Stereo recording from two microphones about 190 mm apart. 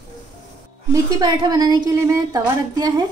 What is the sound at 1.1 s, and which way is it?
A woman's voice, 20° right (ahead or behind).